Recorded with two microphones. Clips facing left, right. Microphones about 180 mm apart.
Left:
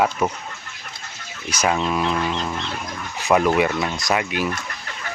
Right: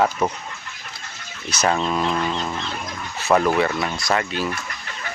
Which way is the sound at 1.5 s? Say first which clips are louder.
Even; 10° left (ahead or behind).